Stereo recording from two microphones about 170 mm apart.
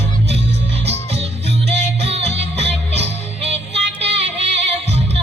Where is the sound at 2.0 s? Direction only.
40° right (ahead or behind).